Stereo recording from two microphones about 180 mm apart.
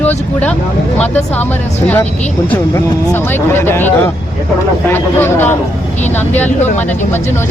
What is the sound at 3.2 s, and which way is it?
Speech, 10° left (ahead or behind).